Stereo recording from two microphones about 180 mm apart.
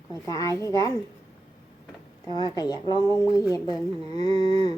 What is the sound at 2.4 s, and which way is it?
A woman's voice, 20° left (ahead or behind).